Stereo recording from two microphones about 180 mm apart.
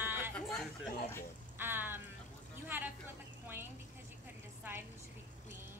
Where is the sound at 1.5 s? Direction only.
10° right (ahead or behind).